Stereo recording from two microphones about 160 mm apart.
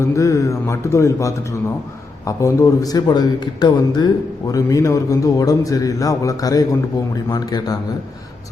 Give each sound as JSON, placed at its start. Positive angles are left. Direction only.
{"t": 0.0, "sound": "speech", "side_deg": 20}